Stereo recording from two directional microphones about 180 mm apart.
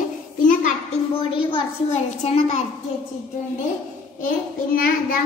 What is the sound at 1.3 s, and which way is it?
A woman's voice, 35° left (ahead or behind).